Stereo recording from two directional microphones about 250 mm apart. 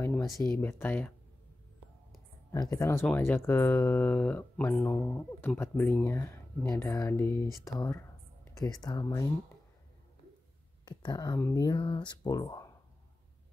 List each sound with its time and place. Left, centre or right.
0.0 s speech: centre
2.5 s speech: centre
10.9 s speech: centre